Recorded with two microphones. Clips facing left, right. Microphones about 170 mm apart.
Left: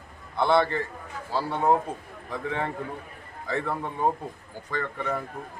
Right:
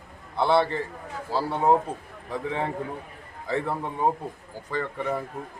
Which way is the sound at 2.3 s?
5° right (ahead or behind).